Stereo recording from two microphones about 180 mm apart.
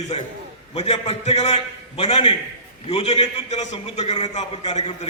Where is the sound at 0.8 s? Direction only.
35° left (ahead or behind).